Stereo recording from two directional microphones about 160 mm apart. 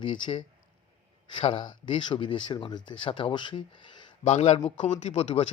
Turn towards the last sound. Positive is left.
turn(degrees=45)  # may be behind; listen again after turning